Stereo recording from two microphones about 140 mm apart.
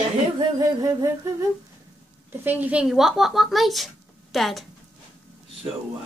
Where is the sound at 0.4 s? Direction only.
25° right (ahead or behind).